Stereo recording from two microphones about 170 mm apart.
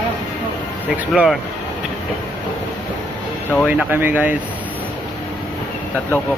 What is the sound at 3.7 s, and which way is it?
Speech, 10° right (ahead or behind).